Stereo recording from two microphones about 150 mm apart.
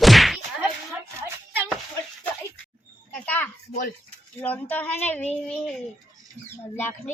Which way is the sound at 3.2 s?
10° left (ahead or behind).